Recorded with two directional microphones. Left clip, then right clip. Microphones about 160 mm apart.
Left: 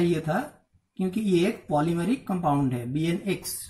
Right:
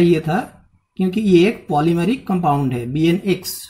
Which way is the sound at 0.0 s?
30° right (ahead or behind).